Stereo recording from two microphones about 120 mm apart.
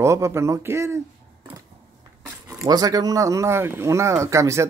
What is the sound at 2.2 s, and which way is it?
A woman's voice, 25° right (ahead or behind).